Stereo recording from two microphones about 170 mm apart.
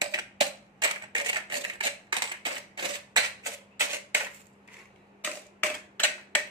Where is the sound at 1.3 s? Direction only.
30° right (ahead or behind).